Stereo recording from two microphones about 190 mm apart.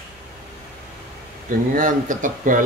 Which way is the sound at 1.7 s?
45° right (ahead or behind).